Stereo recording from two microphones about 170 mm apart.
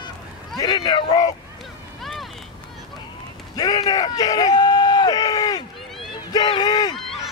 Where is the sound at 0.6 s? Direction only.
25° left (ahead or behind).